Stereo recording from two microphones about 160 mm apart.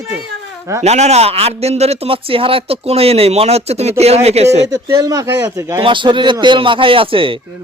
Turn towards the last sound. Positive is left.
turn(degrees=-35)  # may be behind; listen again after turning